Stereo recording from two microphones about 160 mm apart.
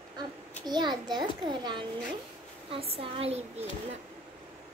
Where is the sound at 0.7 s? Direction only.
25° right (ahead or behind); by 4.0 s 40° right (ahead or behind).